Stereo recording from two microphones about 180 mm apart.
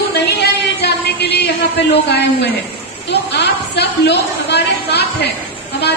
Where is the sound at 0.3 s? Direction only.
65° left (ahead or behind).